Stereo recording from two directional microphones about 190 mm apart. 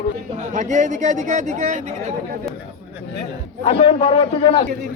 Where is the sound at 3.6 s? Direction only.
30° left (ahead or behind).